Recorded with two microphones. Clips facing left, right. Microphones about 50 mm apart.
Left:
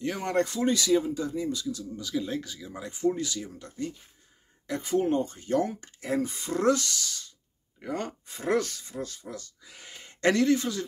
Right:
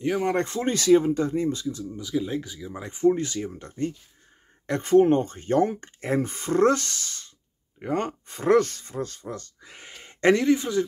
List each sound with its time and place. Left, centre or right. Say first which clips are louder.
0.0 s speech: right 6 dB; centre
0.4 s speech: even; right
2.0 s speech: right 4 dB; centre
2.8 s speech: right 6 dB; right
4.6 s speech: right 8 dB; right